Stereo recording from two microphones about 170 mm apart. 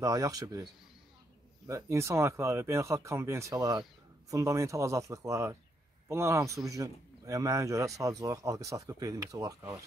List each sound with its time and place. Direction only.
0.0 s speech: 20° right (ahead or behind)
1.7 s speech: 15° right (ahead or behind)